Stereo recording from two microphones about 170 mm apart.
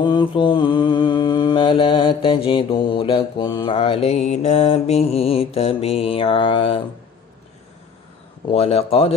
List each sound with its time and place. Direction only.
0.0 s mantra: 30° left (ahead or behind)
8.5 s mantra: 35° left (ahead or behind)